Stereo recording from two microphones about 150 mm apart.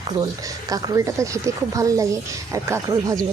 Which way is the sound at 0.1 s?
25° right (ahead or behind).